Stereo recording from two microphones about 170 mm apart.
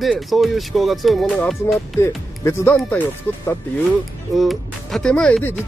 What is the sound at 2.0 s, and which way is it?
Speech, 15° left (ahead or behind).